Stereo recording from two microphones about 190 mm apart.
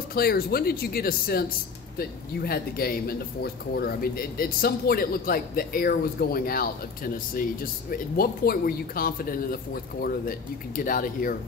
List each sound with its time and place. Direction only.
0.1 s speech: 55° left (ahead or behind)
10.8 s speech: 45° left (ahead or behind)